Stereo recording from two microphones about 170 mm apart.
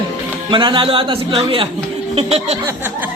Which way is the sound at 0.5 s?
30° right (ahead or behind).